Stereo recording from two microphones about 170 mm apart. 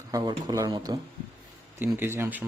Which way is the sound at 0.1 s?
20° right (ahead or behind).